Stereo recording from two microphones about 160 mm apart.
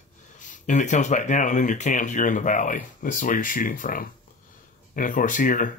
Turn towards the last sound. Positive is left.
turn(degrees=55)  # may be behind; listen again after turning